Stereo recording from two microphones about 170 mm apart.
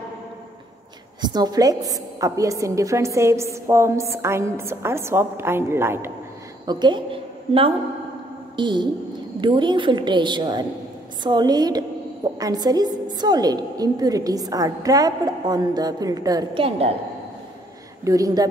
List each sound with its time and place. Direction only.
1.2 s a woman's voice: 25° right (ahead or behind)
6.6 s a woman's voice: 25° right (ahead or behind)
16.6 s a woman's voice: 35° right (ahead or behind)
18.0 s a woman's voice: 20° right (ahead or behind)